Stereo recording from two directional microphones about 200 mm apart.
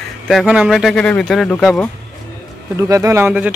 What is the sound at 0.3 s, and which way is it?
Speech, 5° right (ahead or behind).